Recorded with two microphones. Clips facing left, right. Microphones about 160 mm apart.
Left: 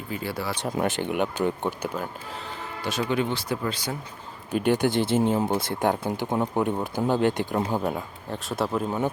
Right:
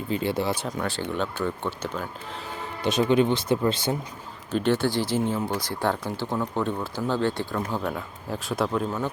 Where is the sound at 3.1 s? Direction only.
20° right (ahead or behind).